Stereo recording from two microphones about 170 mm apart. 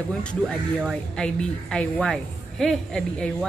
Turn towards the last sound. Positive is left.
turn(degrees=5)  # may be behind; listen again after turning